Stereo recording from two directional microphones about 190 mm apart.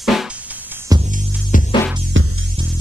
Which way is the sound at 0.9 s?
20° right (ahead or behind).